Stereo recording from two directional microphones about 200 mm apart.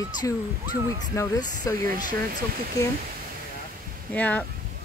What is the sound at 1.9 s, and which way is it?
Speech, 45° right (ahead or behind).